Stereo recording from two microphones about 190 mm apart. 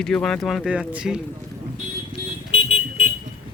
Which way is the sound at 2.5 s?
30° left (ahead or behind).